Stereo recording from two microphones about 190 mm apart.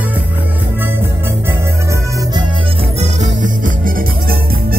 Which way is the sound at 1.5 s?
15° right (ahead or behind).